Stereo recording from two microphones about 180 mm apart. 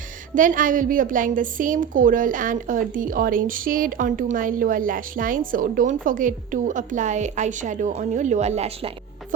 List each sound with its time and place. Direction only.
0.3 s a woman's voice: 45° right (ahead or behind)